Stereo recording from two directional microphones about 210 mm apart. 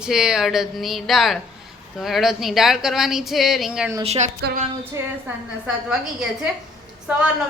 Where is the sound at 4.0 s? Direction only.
30° right (ahead or behind).